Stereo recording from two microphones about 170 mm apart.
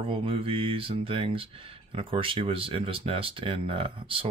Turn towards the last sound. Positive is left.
turn(degrees=-30)  # may be behind; listen again after turning